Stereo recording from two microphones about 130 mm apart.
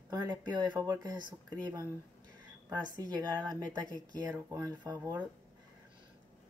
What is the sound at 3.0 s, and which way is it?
Speech, 30° right (ahead or behind).